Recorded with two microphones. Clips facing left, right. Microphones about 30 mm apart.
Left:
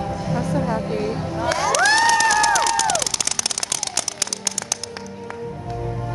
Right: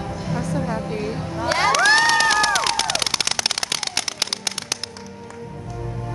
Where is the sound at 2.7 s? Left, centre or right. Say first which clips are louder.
Left 1 dB; right.